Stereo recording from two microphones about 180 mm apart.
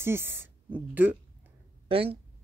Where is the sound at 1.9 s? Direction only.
30° right (ahead or behind).